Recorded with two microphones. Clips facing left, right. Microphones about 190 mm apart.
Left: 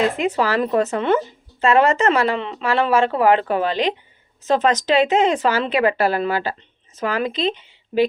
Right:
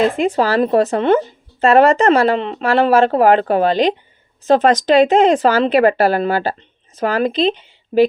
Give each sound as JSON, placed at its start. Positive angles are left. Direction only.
{"t": 0.2, "sound": "speech", "side_deg": -35}